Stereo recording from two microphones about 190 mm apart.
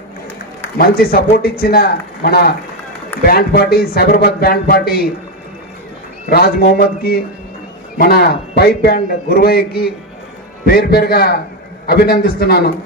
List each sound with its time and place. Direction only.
0.7 s a man's voice: 50° left (ahead or behind)
6.3 s a man's voice: 55° left (ahead or behind)